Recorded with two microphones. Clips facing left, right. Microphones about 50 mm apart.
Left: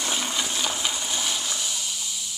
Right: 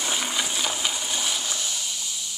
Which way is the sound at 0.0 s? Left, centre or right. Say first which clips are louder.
Even; centre.